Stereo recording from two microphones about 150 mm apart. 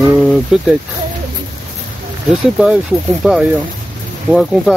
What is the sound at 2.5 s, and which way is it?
Speech, 5° right (ahead or behind).